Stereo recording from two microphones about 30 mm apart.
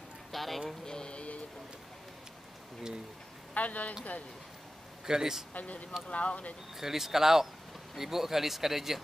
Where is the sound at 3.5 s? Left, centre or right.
Left.